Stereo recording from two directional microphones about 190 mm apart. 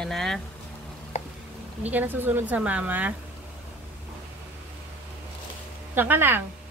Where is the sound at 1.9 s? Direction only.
10° right (ahead or behind).